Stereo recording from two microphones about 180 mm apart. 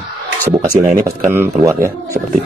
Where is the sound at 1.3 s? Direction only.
15° right (ahead or behind).